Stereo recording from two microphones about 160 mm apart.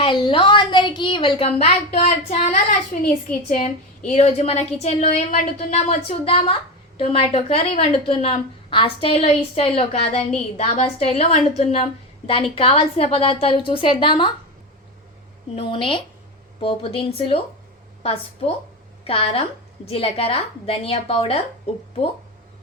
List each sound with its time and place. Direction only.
0.0 s a woman's voice: 30° left (ahead or behind)
2.9 s a child's voice: 55° left (ahead or behind)
3.5 s a woman's voice: 45° left (ahead or behind); by 14.3 s 30° left (ahead or behind)
15.5 s a woman's voice: 35° left (ahead or behind)